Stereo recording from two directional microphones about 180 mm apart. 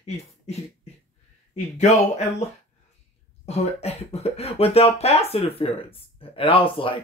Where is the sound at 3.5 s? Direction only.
35° left (ahead or behind).